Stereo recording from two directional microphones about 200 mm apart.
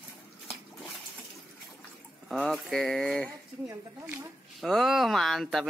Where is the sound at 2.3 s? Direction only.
Centre (ahead or behind).